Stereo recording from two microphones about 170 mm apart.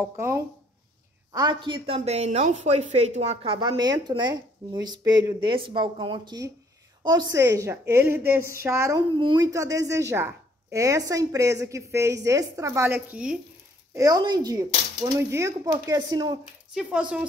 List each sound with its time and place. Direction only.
1.3 s a woman's voice: 25° right (ahead or behind)
3.5 s a woman's voice: 25° right (ahead or behind); by 13.4 s 5° right (ahead or behind)
13.9 s speech: 20° right (ahead or behind)
16.7 s speech: 5° right (ahead or behind)